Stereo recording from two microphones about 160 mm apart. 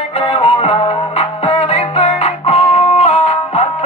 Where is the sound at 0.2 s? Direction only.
35° left (ahead or behind).